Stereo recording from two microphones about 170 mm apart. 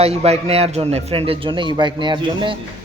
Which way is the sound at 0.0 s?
35° right (ahead or behind).